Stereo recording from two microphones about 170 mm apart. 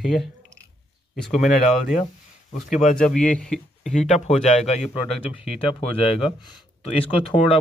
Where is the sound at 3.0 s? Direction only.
5° left (ahead or behind).